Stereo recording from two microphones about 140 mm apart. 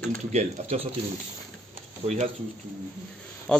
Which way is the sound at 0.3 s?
55° right (ahead or behind).